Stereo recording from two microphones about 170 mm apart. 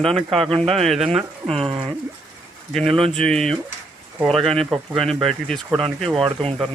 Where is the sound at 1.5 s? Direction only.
35° right (ahead or behind).